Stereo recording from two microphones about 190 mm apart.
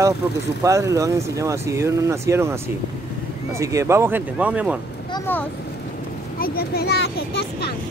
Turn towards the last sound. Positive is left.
turn(degrees=60)  # may be behind; listen again after turning